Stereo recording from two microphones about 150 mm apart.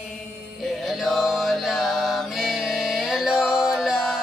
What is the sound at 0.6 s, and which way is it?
Music, centre (ahead or behind).